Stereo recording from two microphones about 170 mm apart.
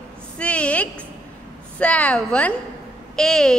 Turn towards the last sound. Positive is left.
turn(degrees=5)  # may be behind; listen again after turning